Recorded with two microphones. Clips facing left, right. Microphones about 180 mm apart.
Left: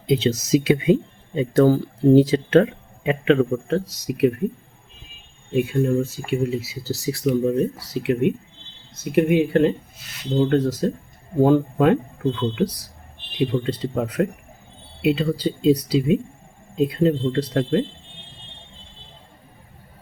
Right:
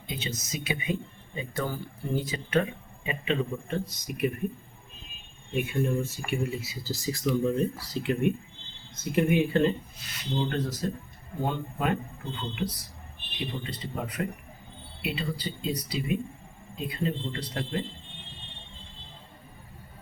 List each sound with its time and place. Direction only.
0.1 s speech: 80° left
5.5 s speech: 90° left
6.3 s speech: 70° left (ahead or behind)
9.1 s speech: 90° left
10.4 s speech: 75° left (ahead or behind)
11.3 s speech: 90° left
17.3 s speech: 80° left